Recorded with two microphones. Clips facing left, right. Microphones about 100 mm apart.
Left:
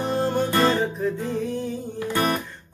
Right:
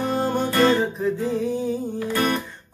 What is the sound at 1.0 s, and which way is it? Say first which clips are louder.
Music: right 2 dB; centre (ahead or behind).